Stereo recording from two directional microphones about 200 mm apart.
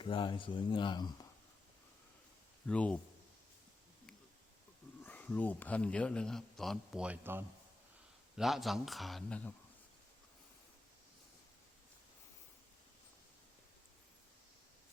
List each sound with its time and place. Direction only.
0.0 s speech: 25° left (ahead or behind)
2.6 s speech: 5° left (ahead or behind)
5.0 s a man's voice: 10° left (ahead or behind)